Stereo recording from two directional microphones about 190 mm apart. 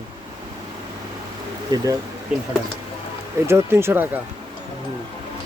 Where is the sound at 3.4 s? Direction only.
15° right (ahead or behind).